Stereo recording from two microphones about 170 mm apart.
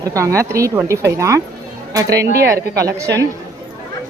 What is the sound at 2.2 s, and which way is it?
Speech, 70° right (ahead or behind).